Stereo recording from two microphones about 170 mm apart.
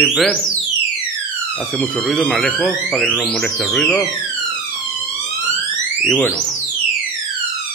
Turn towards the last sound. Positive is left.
turn(degrees=5)  # may be behind; listen again after turning